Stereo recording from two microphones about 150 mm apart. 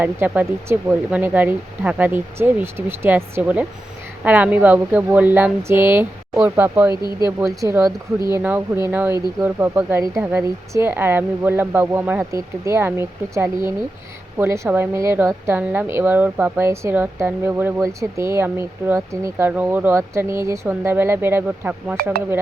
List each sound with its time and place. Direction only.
0.0 s a woman's voice: 15° right (ahead or behind)
6.9 s speech: 30° left (ahead or behind)
7.3 s a woman's voice: 20° right (ahead or behind)